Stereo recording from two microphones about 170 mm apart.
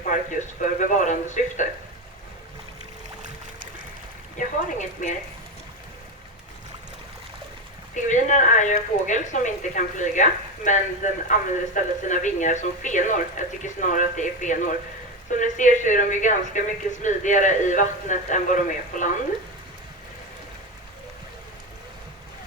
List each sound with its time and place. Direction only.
0.0 s speech: 50° left (ahead or behind)
4.4 s speech: 50° left (ahead or behind)
7.9 s speech: 45° left (ahead or behind)